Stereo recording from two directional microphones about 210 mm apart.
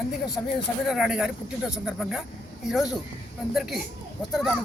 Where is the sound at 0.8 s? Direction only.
Centre (ahead or behind).